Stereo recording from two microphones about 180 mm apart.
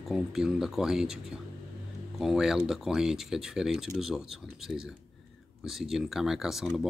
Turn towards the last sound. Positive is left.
turn(degrees=0)  # may be behind; listen again after turning